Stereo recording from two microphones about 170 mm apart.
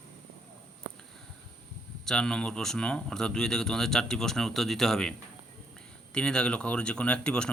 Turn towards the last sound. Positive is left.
turn(degrees=5)  # may be behind; listen again after turning